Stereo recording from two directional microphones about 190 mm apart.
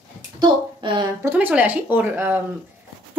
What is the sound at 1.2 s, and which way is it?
Speech, 10° right (ahead or behind).